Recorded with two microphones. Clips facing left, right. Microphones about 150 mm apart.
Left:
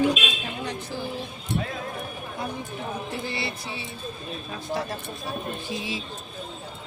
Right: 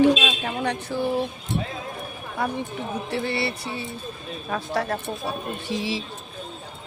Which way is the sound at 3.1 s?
70° right (ahead or behind).